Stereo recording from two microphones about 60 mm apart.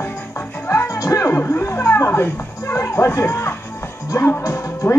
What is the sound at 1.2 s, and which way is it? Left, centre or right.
Music, left.